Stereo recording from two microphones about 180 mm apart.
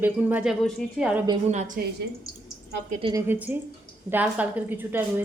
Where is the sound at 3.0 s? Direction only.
25° right (ahead or behind).